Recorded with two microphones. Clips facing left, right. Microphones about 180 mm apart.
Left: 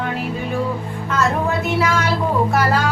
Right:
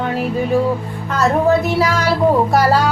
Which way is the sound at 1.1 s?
35° right (ahead or behind).